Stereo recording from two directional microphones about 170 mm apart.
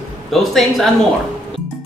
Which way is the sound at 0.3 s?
Centre (ahead or behind).